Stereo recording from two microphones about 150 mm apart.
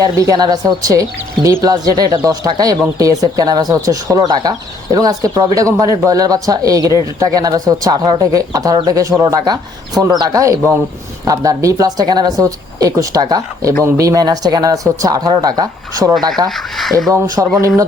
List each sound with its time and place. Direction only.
0.0 s speech: 25° right (ahead or behind)
16.5 s speech: centre (ahead or behind)
17.4 s music: 10° right (ahead or behind)